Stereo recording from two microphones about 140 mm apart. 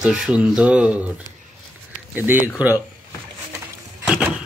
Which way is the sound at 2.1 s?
15° right (ahead or behind).